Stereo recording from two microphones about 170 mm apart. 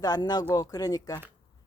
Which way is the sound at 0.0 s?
25° left (ahead or behind).